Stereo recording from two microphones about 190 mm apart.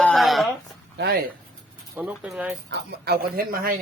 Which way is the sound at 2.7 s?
55° right (ahead or behind).